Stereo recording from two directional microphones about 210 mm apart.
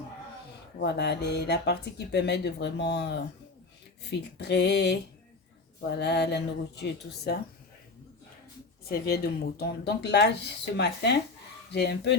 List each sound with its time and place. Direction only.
0.8 s speech: 55° left (ahead or behind)
4.4 s speech: 55° left (ahead or behind)
8.9 s speech: 45° left (ahead or behind)